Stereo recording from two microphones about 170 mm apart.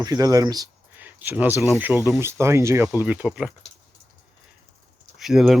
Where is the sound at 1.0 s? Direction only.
10° right (ahead or behind).